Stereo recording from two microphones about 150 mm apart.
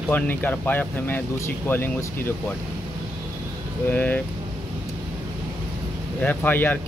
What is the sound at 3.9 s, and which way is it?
Speech, 10° left (ahead or behind).